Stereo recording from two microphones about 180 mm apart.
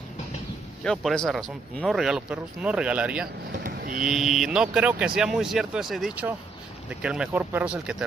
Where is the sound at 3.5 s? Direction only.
55° right (ahead or behind).